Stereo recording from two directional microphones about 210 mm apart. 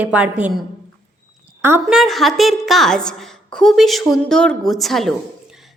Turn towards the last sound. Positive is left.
turn(degrees=0)  # may be behind; listen again after turning